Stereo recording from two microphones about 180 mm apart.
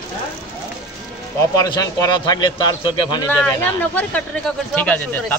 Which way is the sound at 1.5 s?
20° left (ahead or behind).